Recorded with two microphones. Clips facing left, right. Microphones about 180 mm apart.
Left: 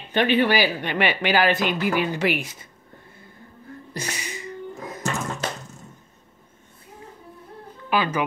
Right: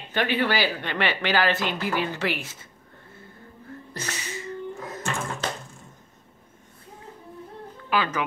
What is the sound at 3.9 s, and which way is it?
Music, 15° left (ahead or behind).